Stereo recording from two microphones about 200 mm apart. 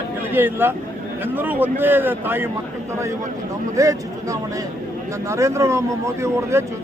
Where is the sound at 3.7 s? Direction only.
15° right (ahead or behind).